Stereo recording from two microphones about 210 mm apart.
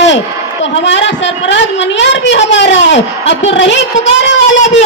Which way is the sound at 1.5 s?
60° left (ahead or behind).